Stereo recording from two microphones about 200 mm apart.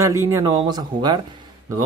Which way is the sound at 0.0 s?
15° right (ahead or behind).